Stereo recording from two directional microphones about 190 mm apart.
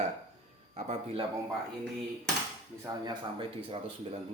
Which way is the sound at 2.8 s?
20° right (ahead or behind).